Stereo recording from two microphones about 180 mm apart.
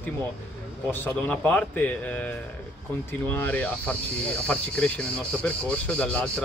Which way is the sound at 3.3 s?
10° left (ahead or behind).